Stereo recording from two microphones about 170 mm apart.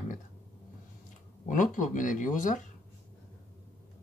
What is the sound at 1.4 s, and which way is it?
Speech, 50° left (ahead or behind).